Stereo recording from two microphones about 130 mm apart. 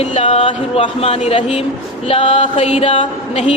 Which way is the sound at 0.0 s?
55° left (ahead or behind).